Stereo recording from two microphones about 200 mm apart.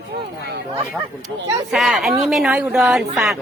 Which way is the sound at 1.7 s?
Centre (ahead or behind).